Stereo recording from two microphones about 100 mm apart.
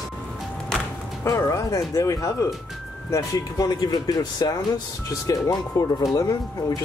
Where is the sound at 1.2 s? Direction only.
30° left (ahead or behind).